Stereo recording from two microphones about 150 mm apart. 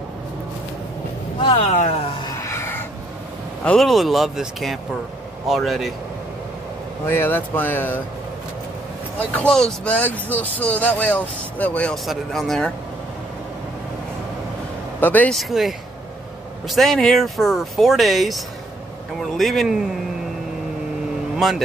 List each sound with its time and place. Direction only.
1.6 s speech: 50° left (ahead or behind)
2.4 s a sound: 15° left (ahead or behind)
3.6 s speech: centre (ahead or behind)
7.1 s speech: 15° left (ahead or behind)
9.3 s speech: 5° left (ahead or behind)
15.0 s a man's voice: 10° left (ahead or behind)
15.3 s speech: centre (ahead or behind)